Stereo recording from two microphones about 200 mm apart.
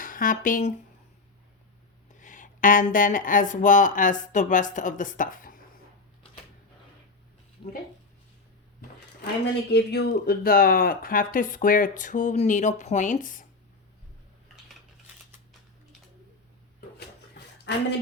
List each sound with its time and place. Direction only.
0.0 s speech: 45° left (ahead or behind)
2.0 s speech: 40° left (ahead or behind)
9.2 s speech: 55° left (ahead or behind); by 13.5 s 40° left (ahead or behind)